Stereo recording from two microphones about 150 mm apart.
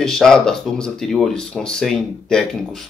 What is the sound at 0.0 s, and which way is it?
Speech, 5° left (ahead or behind).